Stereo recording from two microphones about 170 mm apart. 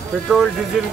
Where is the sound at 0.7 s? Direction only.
Centre (ahead or behind).